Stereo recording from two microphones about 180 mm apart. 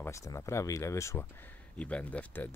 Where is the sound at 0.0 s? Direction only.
15° left (ahead or behind).